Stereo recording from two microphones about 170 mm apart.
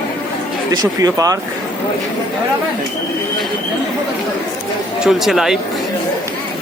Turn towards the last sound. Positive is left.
turn(degrees=0)  # may be behind; listen again after turning